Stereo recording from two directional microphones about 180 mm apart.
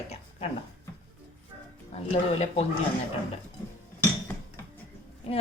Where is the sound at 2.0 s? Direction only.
35° left (ahead or behind).